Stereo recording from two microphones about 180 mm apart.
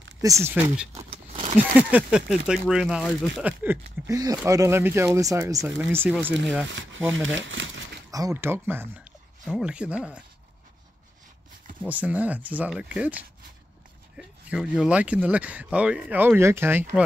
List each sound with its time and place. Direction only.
0.2 s speech: 15° right (ahead or behind)
1.1 s a sound: 30° right (ahead or behind)
1.8 s speech: 5° right (ahead or behind)
3.4 s speech: 10° right (ahead or behind)
6.7 s speech: 90° right
8.1 s speech: 20° right (ahead or behind)
11.9 s speech: 10° right (ahead or behind)